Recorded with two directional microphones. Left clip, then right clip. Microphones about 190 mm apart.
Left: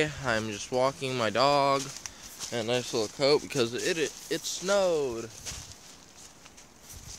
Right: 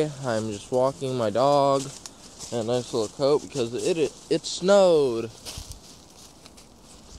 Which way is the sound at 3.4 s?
45° left (ahead or behind).